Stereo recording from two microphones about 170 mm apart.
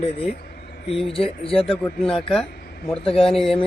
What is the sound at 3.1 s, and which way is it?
Speech, 35° left (ahead or behind).